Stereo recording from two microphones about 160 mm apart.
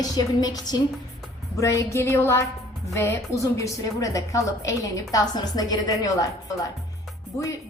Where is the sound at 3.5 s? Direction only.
20° left (ahead or behind).